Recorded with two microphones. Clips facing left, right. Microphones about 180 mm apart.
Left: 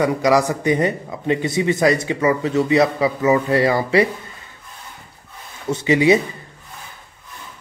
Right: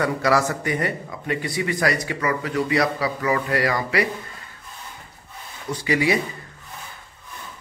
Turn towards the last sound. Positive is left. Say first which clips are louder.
# left 6 dB
turn(degrees=20)  # may be behind; listen again after turning